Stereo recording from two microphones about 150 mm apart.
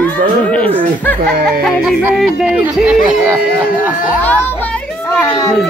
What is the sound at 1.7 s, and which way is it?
Speech, 5° right (ahead or behind).